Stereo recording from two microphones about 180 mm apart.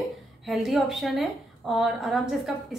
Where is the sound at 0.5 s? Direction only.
Centre (ahead or behind).